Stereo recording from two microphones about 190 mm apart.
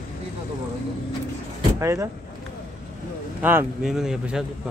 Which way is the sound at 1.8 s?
15° right (ahead or behind).